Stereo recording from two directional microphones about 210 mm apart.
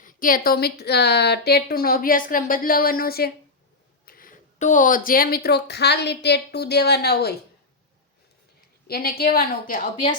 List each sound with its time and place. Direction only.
0.0 s speech: 40° left (ahead or behind)
8.9 s speech: 45° left (ahead or behind)